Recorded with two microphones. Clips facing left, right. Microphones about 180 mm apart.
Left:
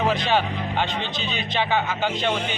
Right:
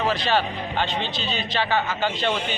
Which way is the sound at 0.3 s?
15° left (ahead or behind).